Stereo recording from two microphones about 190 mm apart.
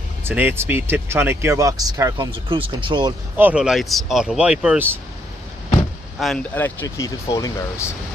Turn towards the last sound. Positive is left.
turn(degrees=15)  # may be behind; listen again after turning